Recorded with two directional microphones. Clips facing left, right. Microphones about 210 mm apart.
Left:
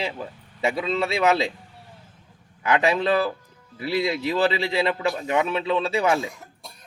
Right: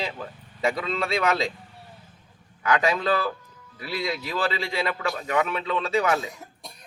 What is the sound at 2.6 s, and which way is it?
A man's voice, 25° left (ahead or behind).